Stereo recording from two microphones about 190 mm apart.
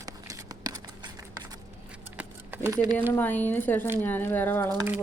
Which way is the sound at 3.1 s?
10° left (ahead or behind).